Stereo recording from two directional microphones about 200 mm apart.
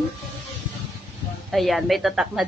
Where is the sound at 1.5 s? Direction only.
Centre (ahead or behind).